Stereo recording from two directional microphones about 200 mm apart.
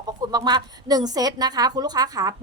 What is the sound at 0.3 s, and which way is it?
A woman's voice, 20° right (ahead or behind).